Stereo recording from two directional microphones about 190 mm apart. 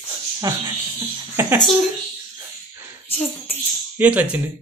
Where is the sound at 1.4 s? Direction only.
10° right (ahead or behind).